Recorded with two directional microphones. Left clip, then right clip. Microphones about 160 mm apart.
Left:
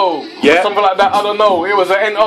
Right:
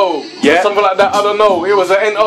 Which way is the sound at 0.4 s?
5° right (ahead or behind).